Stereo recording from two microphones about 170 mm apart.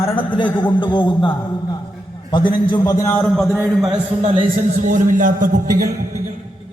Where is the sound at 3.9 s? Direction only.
35° right (ahead or behind).